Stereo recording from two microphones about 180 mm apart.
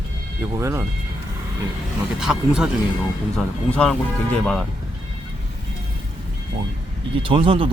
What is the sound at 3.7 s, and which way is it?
Speech, 5° left (ahead or behind).